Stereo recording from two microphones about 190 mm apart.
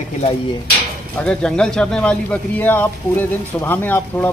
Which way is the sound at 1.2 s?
5° left (ahead or behind).